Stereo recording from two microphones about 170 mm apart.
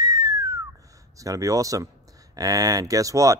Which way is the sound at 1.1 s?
20° right (ahead or behind).